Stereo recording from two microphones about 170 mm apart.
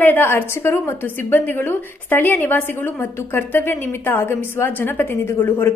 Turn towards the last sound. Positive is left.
turn(degrees=15)  # may be behind; listen again after turning